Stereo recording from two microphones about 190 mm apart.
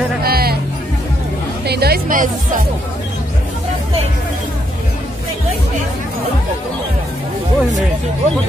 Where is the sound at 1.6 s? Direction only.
55° right (ahead or behind).